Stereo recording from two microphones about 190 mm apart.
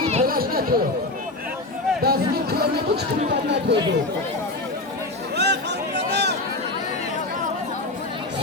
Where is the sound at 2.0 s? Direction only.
55° right (ahead or behind).